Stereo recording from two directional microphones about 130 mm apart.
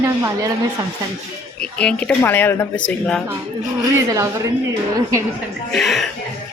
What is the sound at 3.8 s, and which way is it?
Speech, 20° right (ahead or behind).